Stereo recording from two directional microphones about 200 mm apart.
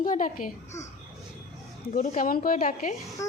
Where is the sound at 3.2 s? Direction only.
15° left (ahead or behind).